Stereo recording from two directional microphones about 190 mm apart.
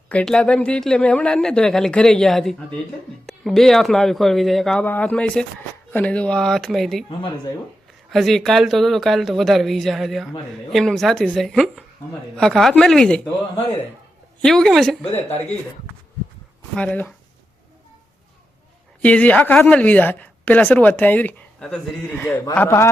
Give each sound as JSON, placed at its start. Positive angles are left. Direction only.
{"t": 0.1, "sound": "speech", "side_deg": 5}
{"t": 7.1, "sound": "speech", "side_deg": 25}
{"t": 8.1, "sound": "speech", "side_deg": 0}
{"t": 14.4, "sound": "speech", "side_deg": 0}
{"t": 16.7, "sound": "speech", "side_deg": 5}
{"t": 19.0, "sound": "speech", "side_deg": 5}